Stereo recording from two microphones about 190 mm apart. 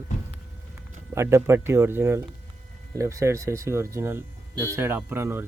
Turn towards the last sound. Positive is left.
turn(degrees=-10)  # may be behind; listen again after turning